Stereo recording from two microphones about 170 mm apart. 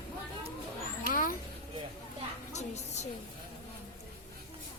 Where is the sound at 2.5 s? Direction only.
40° left (ahead or behind).